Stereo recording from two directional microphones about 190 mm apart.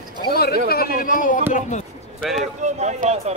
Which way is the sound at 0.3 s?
55° left (ahead or behind).